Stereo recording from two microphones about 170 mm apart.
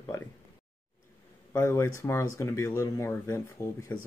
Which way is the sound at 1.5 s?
15° left (ahead or behind).